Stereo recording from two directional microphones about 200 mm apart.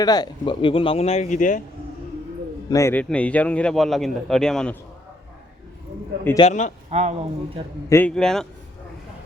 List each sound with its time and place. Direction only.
0.0 s speech: 20° left (ahead or behind); by 1.6 s 40° left (ahead or behind)
2.6 s a man's voice: 15° left (ahead or behind)
6.4 s a man's voice: 35° left (ahead or behind)
6.9 s speech: 35° right (ahead or behind)
7.9 s a man's voice: 10° left (ahead or behind)